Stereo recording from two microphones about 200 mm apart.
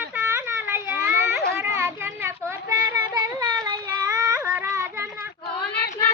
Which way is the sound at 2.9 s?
20° right (ahead or behind).